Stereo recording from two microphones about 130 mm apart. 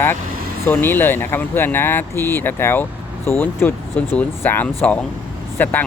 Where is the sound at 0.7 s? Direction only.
15° left (ahead or behind).